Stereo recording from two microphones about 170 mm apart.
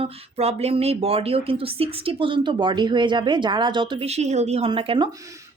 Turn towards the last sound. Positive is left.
turn(degrees=-30)  # may be behind; listen again after turning